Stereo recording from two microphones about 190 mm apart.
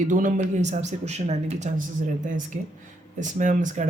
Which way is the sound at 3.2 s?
40° right (ahead or behind).